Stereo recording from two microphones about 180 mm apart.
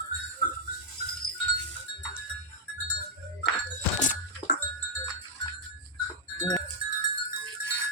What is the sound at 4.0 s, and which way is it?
Music, 45° left (ahead or behind).